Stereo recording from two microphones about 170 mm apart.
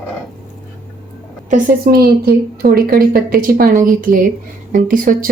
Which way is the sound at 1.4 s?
55° right (ahead or behind).